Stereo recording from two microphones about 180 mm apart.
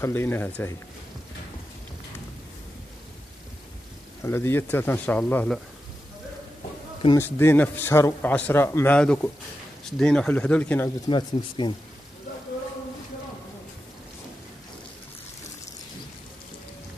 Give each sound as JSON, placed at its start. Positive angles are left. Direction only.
{"t": 0.0, "sound": "a man's voice", "side_deg": 10}
{"t": 4.2, "sound": "a man's voice", "side_deg": 15}
{"t": 7.2, "sound": "a man's voice", "side_deg": 15}
{"t": 11.1, "sound": "speech", "side_deg": 25}